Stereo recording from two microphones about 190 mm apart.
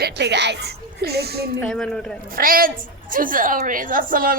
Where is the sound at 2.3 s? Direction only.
50° right (ahead or behind).